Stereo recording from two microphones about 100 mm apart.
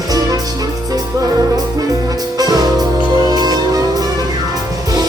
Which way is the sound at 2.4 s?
40° right (ahead or behind).